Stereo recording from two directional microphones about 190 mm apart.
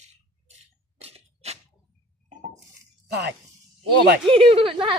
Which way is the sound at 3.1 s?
60° right (ahead or behind).